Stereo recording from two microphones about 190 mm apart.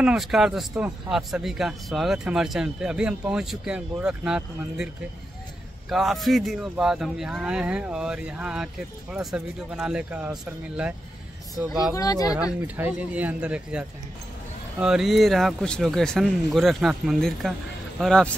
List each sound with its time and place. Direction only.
0.0 s a man's voice: centre (ahead or behind)
5.9 s a man's voice: centre (ahead or behind)
11.9 s speech: 20° left (ahead or behind)
12.6 s a man's voice: 10° right (ahead or behind)